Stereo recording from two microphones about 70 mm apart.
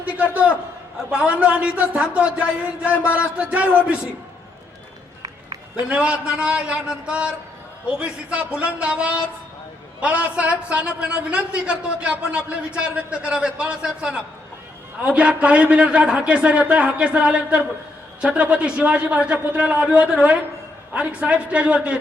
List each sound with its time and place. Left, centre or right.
0.0 s a sound: centre
1.1 s a man's voice: centre
5.9 s a man's voice: centre